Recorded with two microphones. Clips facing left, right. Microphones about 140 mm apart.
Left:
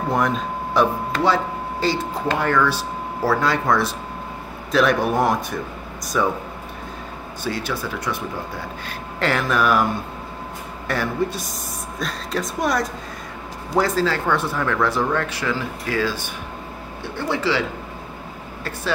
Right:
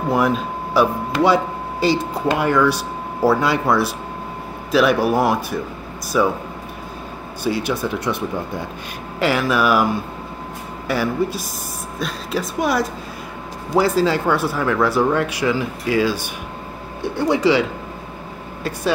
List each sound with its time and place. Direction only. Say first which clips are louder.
0.7 s speech: right 3 dB; 10° right (ahead or behind)
7.4 s speech: right 5 dB; 10° right (ahead or behind)
9.2 s speech: right 2 dB; 5° right (ahead or behind)
10.9 s speech: right 3 dB; 5° right (ahead or behind)